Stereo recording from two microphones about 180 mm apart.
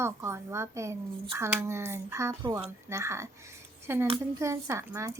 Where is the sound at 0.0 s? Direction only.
15° right (ahead or behind).